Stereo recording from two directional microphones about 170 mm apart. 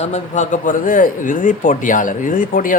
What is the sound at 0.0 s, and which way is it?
A man's voice, 45° left (ahead or behind).